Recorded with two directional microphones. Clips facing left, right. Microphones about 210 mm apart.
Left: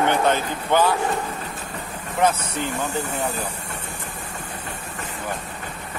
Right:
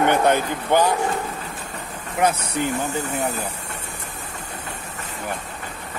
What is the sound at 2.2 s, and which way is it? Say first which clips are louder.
Speech: even; 10° right (ahead or behind).